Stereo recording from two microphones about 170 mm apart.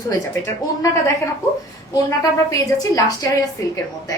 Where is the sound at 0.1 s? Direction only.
20° left (ahead or behind).